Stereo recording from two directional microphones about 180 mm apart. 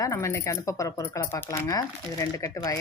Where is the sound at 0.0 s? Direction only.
15° left (ahead or behind).